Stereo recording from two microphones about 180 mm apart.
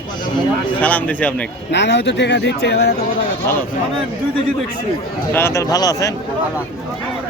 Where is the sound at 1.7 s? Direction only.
75° left (ahead or behind).